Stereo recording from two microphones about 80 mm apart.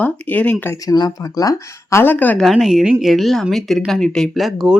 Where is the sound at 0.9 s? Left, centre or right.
Left.